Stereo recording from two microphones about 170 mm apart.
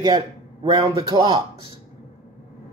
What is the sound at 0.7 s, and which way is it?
Speech, 25° right (ahead or behind).